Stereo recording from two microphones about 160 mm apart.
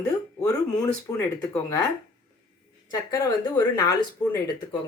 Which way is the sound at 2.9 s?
25° left (ahead or behind).